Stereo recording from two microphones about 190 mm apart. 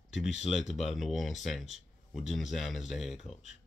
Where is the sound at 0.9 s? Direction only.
Centre (ahead or behind).